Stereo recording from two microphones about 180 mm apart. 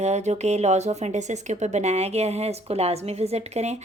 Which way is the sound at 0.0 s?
40° right (ahead or behind).